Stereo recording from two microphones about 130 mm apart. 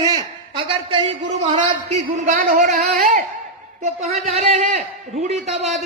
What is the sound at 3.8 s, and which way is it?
Speech, 60° right (ahead or behind).